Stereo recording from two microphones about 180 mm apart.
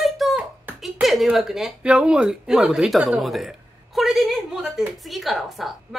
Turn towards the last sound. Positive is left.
turn(degrees=0)  # may be behind; listen again after turning